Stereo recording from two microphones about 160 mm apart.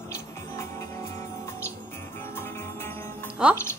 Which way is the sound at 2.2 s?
15° left (ahead or behind).